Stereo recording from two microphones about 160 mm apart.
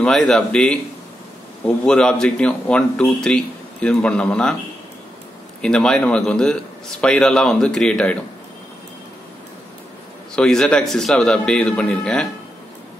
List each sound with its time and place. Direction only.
0.0 s speech: 5° left (ahead or behind)
1.9 s speech: 5° left (ahead or behind)
5.6 s speech: 5° left (ahead or behind)
10.3 s speech: 5° left (ahead or behind)